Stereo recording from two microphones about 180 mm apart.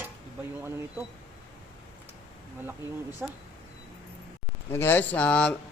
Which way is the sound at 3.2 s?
5° right (ahead or behind).